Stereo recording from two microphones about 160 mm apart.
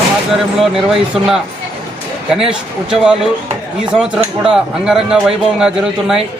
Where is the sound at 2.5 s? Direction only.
5° right (ahead or behind).